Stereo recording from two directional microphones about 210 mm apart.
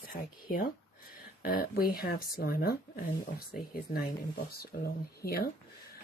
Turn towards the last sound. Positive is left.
turn(degrees=45)  # may be behind; listen again after turning